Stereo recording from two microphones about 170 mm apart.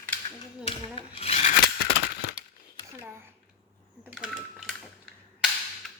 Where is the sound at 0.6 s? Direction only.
35° left (ahead or behind).